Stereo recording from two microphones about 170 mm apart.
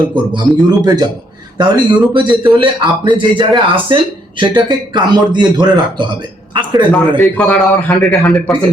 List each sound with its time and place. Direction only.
0.3 s a man's voice: 25° right (ahead or behind)
6.9 s a man's voice: 5° left (ahead or behind)